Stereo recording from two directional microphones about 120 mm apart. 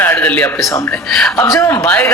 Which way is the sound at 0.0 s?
15° left (ahead or behind).